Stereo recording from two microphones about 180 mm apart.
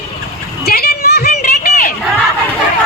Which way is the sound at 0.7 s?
60° left (ahead or behind).